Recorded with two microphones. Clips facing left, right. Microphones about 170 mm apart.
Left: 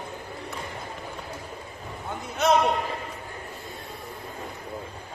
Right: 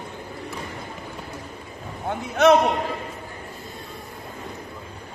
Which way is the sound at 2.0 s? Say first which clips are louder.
Right 7 dB; 65° right (ahead or behind).